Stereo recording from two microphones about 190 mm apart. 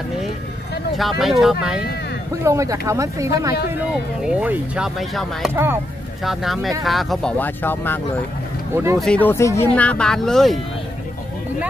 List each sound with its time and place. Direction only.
0.9 s speech: centre (ahead or behind)
2.4 s speech: 15° right (ahead or behind)
3.9 s speech: 5° right (ahead or behind)
5.5 s speech: 10° right (ahead or behind)
6.2 s speech: centre (ahead or behind)
8.7 s speech: 15° right (ahead or behind)
9.0 s speech: 5° left (ahead or behind)